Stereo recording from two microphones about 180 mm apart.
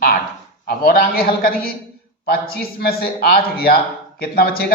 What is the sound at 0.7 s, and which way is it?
Speech, 55° left (ahead or behind).